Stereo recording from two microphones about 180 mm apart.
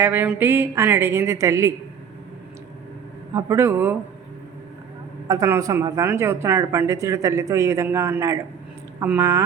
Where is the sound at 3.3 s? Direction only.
15° right (ahead or behind).